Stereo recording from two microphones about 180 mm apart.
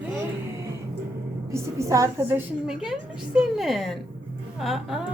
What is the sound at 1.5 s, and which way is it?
Speech, 15° right (ahead or behind).